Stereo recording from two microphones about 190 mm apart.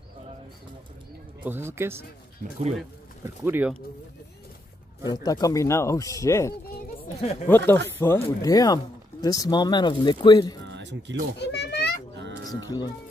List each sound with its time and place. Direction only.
1.4 s speech: 10° right (ahead or behind)
3.4 s speech: 10° right (ahead or behind)
5.0 s speech: 20° left (ahead or behind)
7.2 s speech: 30° left (ahead or behind)
7.4 s speech: 10° left (ahead or behind)
10.6 s music: 70° right (ahead or behind)
11.3 s children playing: 65° left (ahead or behind)
12.6 s speech: 20° left (ahead or behind)